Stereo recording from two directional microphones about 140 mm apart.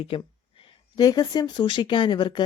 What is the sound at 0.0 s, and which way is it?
Speech, 40° left (ahead or behind).